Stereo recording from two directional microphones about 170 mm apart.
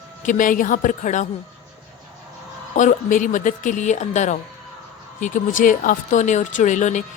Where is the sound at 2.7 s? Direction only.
50° left (ahead or behind).